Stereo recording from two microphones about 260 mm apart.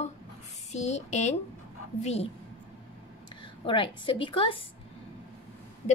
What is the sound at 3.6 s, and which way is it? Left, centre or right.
A woman's voice, centre.